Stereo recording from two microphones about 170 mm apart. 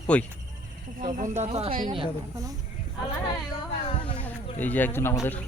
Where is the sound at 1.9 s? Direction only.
25° right (ahead or behind).